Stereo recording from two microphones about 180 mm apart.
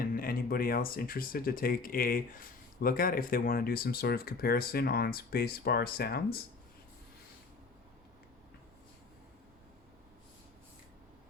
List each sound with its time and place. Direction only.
0.0 s speech: 55° left (ahead or behind)